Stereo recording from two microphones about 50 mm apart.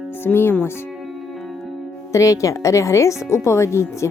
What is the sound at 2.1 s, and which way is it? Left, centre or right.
Speech, left.